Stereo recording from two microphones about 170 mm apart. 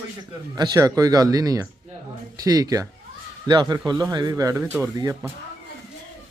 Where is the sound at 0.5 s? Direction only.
25° right (ahead or behind).